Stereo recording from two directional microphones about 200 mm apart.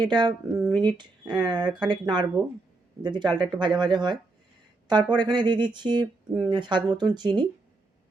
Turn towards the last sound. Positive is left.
turn(degrees=-20)  # may be behind; listen again after turning